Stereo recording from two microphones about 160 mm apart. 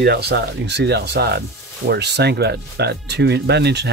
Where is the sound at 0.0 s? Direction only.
85° right.